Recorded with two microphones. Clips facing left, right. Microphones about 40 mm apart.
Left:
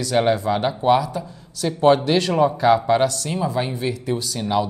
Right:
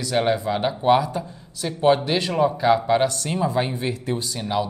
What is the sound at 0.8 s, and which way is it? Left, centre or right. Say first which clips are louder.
Speech: even; right.